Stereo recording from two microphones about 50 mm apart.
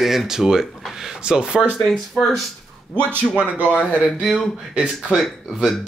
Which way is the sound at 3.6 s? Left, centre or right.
Left.